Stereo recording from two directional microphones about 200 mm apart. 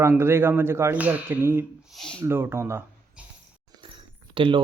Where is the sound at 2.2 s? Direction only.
10° right (ahead or behind).